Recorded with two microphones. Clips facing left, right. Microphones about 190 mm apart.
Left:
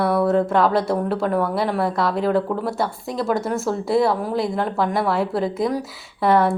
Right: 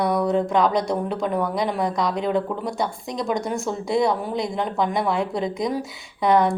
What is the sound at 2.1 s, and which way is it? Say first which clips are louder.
A woman's voice: left 3 dB; 5° left (ahead or behind).